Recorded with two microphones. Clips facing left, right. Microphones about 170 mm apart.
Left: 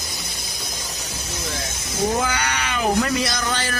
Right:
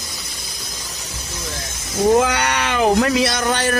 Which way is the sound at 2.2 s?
70° right (ahead or behind).